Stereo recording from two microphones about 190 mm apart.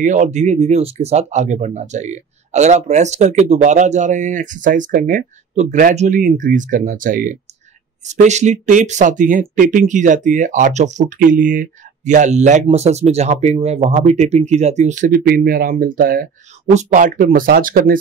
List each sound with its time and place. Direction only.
0.0 s speech: 40° right (ahead or behind)